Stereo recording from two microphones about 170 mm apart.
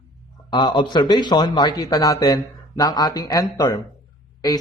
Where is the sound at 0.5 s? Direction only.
25° left (ahead or behind).